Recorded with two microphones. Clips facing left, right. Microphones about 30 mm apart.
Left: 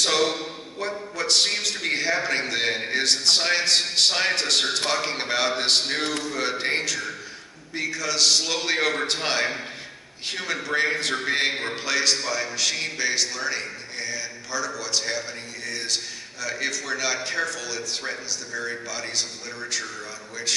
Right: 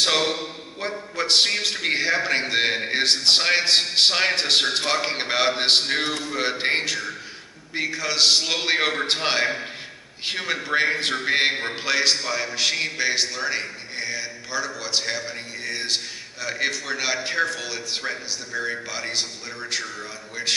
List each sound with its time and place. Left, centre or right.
0.0 s a man's voice: centre